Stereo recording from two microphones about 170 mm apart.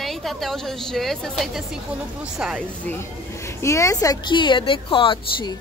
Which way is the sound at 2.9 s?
15° left (ahead or behind).